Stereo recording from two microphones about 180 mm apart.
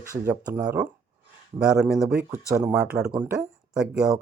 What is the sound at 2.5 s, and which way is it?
Speech, 15° right (ahead or behind).